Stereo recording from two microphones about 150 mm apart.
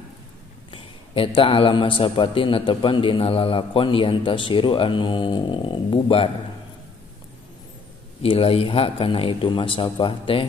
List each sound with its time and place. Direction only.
0.7 s a man's voice: 35° left (ahead or behind)
8.2 s a man's voice: 40° left (ahead or behind)